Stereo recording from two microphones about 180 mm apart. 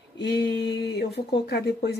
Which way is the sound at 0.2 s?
75° left (ahead or behind).